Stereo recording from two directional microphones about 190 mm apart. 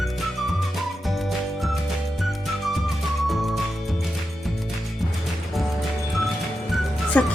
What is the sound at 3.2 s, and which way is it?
Music, centre (ahead or behind).